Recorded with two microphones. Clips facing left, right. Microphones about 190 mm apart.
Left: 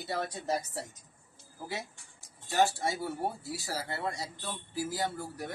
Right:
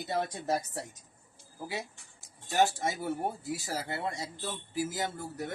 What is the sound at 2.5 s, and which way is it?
A woman's voice, 20° right (ahead or behind).